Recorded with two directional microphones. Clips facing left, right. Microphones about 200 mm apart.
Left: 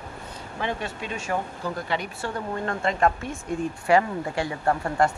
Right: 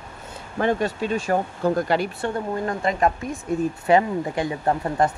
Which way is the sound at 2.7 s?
20° right (ahead or behind).